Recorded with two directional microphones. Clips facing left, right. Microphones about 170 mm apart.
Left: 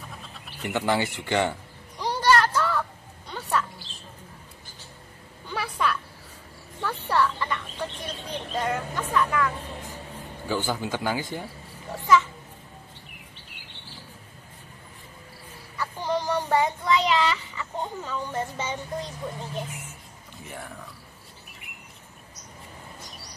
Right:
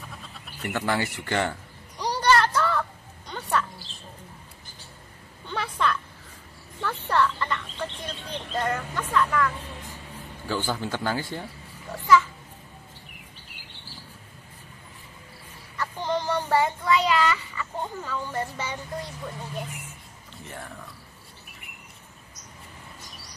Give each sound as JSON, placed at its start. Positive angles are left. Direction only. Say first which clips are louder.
{"t": 0.7, "sound": "speech", "louder": "left 2 dB", "side_deg": 20}
{"t": 2.0, "sound": "a sound", "louder": "even", "side_deg": 0}
{"t": 5.5, "sound": "a sound", "louder": "right 1 dB", "side_deg": 10}
{"t": 6.8, "sound": "fowl", "louder": "even", "side_deg": 10}
{"t": 10.5, "sound": "speech", "louder": "left 1 dB", "side_deg": 15}
{"t": 15.8, "sound": "speech", "louder": "even", "side_deg": 10}